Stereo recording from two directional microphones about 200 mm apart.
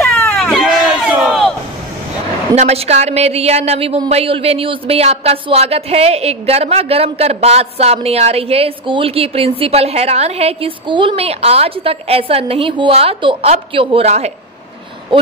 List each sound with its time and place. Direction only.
0.0 s baby cry: 10° left (ahead or behind)
0.4 s a sound: centre (ahead or behind)
2.5 s a woman's voice: 30° right (ahead or behind)